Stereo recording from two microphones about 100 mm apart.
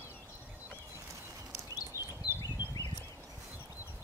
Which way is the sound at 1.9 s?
35° left (ahead or behind).